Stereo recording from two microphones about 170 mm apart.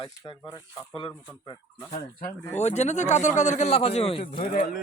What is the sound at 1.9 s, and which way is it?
A man's voice, 50° left (ahead or behind).